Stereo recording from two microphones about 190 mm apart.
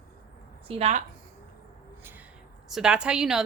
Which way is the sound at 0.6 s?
30° right (ahead or behind).